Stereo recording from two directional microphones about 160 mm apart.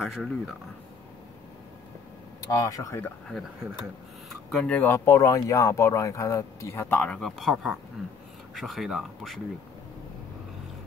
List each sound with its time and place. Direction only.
0.0 s speech: centre (ahead or behind)
2.5 s speech: 20° left (ahead or behind)
4.5 s speech: 5° left (ahead or behind)